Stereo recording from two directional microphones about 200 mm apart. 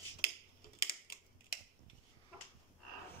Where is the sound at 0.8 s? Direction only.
45° left (ahead or behind).